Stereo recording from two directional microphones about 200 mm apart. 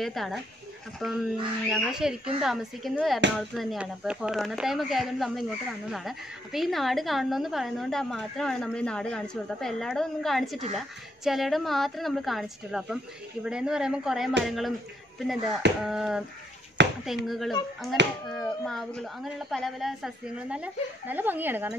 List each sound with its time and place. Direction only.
0.0 s a woman's voice: centre (ahead or behind)
18.0 s speech: 60° right (ahead or behind)
18.3 s a woman's voice: 5° left (ahead or behind)